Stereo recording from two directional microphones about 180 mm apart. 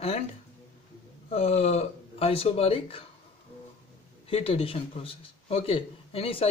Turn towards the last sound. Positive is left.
turn(degrees=30)  # may be behind; listen again after turning